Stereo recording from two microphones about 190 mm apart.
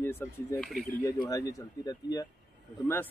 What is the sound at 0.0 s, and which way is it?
A man's voice, 10° left (ahead or behind).